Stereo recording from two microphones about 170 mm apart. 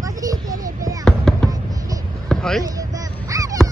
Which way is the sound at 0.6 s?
20° right (ahead or behind).